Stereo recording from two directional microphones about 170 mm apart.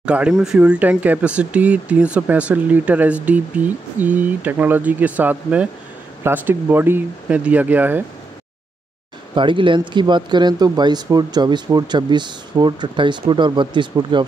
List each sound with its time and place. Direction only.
0.0 s speech: 5° right (ahead or behind)
9.3 s speech: 30° right (ahead or behind)